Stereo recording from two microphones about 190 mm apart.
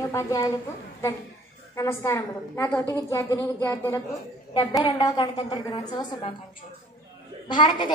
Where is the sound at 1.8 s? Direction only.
15° left (ahead or behind).